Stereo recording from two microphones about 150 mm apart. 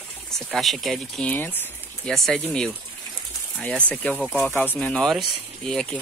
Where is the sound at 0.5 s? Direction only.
Centre (ahead or behind).